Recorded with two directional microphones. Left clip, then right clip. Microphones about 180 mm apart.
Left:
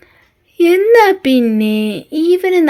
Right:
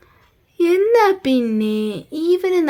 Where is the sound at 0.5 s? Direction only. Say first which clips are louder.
Left 5 dB; 15° left (ahead or behind).